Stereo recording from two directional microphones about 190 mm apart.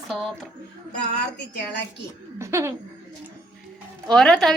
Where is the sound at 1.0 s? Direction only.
65° left (ahead or behind).